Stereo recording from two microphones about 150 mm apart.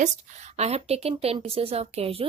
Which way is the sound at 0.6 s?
45° right (ahead or behind).